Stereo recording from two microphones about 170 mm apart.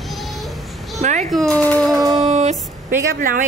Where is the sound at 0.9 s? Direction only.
40° right (ahead or behind).